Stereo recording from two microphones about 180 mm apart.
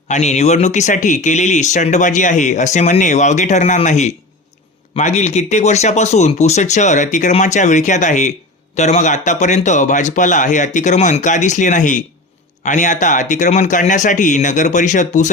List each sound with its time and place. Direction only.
0.1 s speech: 40° left (ahead or behind)